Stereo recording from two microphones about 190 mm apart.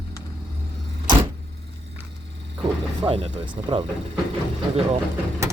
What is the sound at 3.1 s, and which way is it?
Speech, 30° right (ahead or behind).